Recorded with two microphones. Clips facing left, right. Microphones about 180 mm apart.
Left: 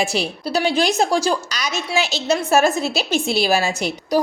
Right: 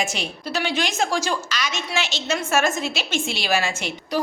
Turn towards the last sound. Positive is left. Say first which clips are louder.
# left 6 dB
turn(degrees=40)  # may be behind; listen again after turning